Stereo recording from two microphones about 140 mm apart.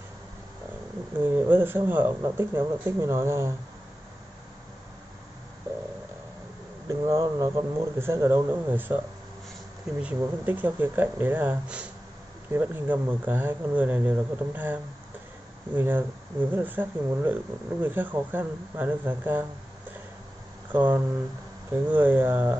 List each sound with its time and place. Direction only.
1.2 s speech: 15° right (ahead or behind)
6.9 s speech: 25° right (ahead or behind)
10.0 s speech: 10° right (ahead or behind)
20.7 s speech: 10° right (ahead or behind)